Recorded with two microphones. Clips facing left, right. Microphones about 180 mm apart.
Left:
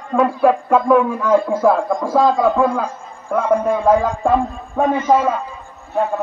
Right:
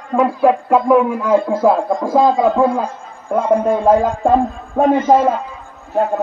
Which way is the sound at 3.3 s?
30° right (ahead or behind).